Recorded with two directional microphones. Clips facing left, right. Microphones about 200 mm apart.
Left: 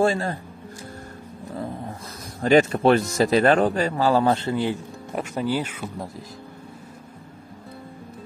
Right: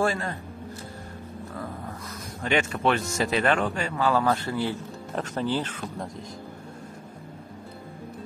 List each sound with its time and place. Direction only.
0.0 s speech: 30° left (ahead or behind)
1.5 s dog: 25° left (ahead or behind)
2.4 s speech: 40° left (ahead or behind); by 6.2 s 5° left (ahead or behind)